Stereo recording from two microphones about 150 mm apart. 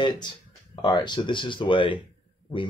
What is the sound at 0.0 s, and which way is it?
Speech, 30° left (ahead or behind).